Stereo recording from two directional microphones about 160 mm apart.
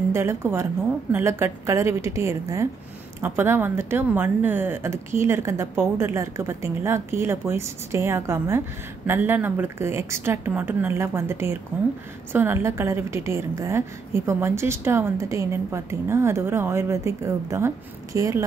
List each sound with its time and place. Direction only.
0.1 s a woman's voice: 15° right (ahead or behind)